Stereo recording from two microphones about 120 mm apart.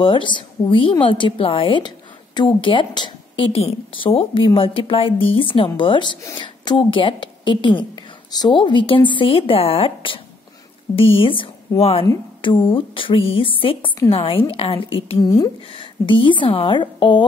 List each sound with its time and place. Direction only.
0.0 s a woman's voice: 45° left (ahead or behind)
15.2 s speech: 30° left (ahead or behind)
15.7 s a woman's voice: 45° left (ahead or behind)